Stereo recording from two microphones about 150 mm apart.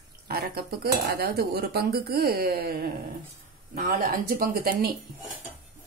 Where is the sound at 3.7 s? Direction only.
75° right (ahead or behind).